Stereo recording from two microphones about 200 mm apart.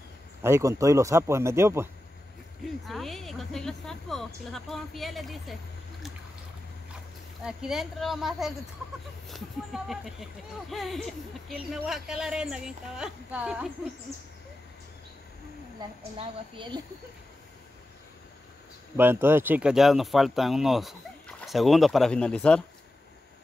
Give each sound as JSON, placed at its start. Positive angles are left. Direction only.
{"t": 0.4, "sound": "a man's voice", "side_deg": -15}
{"t": 2.9, "sound": "speech", "side_deg": 0}
{"t": 7.4, "sound": "speech", "side_deg": 0}
{"t": 16.0, "sound": "a woman's voice", "side_deg": -25}
{"t": 18.9, "sound": "speech", "side_deg": -10}